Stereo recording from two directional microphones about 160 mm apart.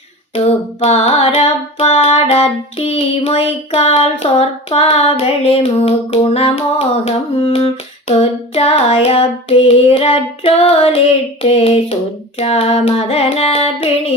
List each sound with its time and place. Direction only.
0.3 s child singing: 40° left (ahead or behind)